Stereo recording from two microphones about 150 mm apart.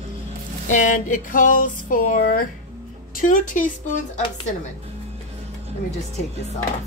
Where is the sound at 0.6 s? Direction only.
60° left (ahead or behind).